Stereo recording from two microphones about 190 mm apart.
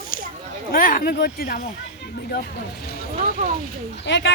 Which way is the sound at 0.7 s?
50° left (ahead or behind).